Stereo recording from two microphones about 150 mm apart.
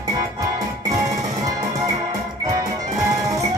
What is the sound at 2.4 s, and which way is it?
Music, 25° right (ahead or behind).